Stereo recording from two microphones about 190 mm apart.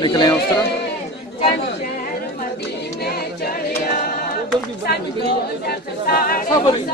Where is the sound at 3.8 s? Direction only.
50° left (ahead or behind).